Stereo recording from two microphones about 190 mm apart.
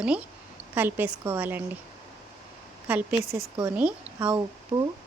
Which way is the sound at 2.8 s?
10° right (ahead or behind).